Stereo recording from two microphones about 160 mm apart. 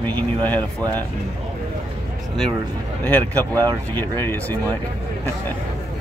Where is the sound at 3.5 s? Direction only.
20° right (ahead or behind).